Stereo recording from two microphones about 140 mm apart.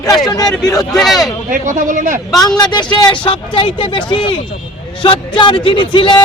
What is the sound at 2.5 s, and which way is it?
Speech, 30° left (ahead or behind).